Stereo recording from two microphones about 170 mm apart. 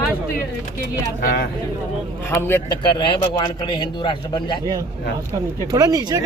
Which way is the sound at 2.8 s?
25° left (ahead or behind).